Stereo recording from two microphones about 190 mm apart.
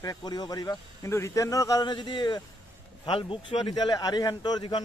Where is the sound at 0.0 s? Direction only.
20° left (ahead or behind).